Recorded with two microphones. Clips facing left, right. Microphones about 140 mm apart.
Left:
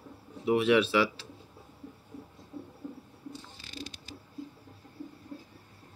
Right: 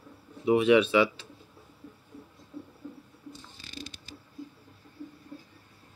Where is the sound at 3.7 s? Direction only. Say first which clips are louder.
Left 1 dB; 45° right (ahead or behind).